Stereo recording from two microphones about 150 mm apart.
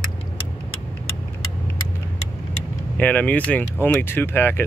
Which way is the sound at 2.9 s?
10° left (ahead or behind).